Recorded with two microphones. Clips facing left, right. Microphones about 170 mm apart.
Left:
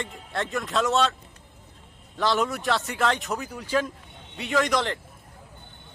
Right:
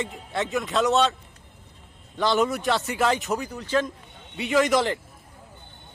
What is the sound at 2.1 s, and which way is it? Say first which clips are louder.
Speech: right 2 dB; centre (ahead or behind).